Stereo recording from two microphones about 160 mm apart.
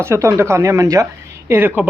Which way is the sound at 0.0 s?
20° right (ahead or behind).